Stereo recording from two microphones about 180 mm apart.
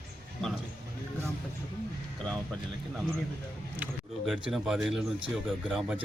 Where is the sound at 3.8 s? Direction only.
10° right (ahead or behind).